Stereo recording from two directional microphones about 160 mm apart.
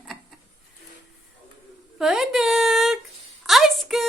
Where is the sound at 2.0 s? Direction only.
Centre (ahead or behind).